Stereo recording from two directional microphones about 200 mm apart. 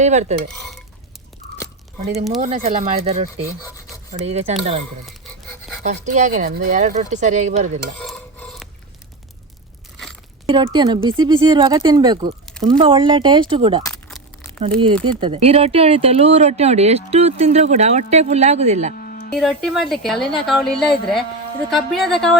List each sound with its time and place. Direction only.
0.0 s speech: 35° right (ahead or behind)
2.4 s speech: 35° right (ahead or behind)
5.0 s pant: centre (ahead or behind)
5.8 s speech: 35° right (ahead or behind)
7.9 s stir: 5° left (ahead or behind)
10.4 s speech: 20° right (ahead or behind)
15.0 s speech: 25° right (ahead or behind)
18.9 s a sound: 45° left (ahead or behind)
19.4 s a woman's voice: centre (ahead or behind)